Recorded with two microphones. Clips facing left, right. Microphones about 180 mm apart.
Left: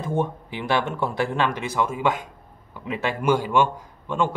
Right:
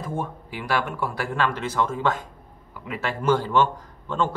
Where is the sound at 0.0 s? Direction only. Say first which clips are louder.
Left 5 dB; 25° left (ahead or behind).